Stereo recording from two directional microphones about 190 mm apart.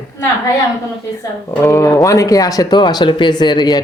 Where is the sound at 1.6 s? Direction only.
15° left (ahead or behind).